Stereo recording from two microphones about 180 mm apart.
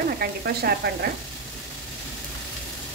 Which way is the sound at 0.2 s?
60° right (ahead or behind).